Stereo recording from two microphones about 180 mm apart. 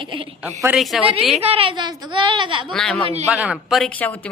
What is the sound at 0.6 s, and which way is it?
Speech, 5° right (ahead or behind).